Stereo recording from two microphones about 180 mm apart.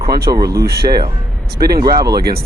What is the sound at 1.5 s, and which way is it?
Speech, 60° right (ahead or behind).